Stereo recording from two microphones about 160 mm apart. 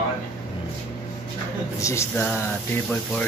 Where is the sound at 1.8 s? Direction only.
15° left (ahead or behind).